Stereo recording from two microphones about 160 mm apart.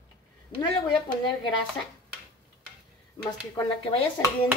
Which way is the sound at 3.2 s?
30° left (ahead or behind).